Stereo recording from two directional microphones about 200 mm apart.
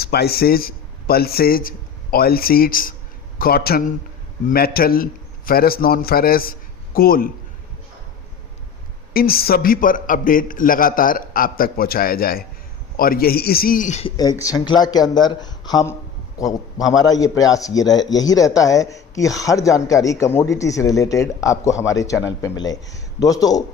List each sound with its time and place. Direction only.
0.0 s a man's voice: 50° left (ahead or behind)
9.1 s a man's voice: 50° left (ahead or behind)
14.2 s a man's voice: 20° left (ahead or behind)